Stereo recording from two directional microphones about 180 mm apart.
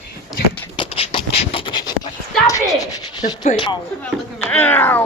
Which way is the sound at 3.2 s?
45° left (ahead or behind).